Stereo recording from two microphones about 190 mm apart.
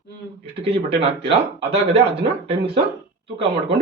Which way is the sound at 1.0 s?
30° right (ahead or behind).